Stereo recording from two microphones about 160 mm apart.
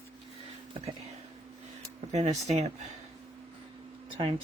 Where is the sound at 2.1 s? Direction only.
45° right (ahead or behind).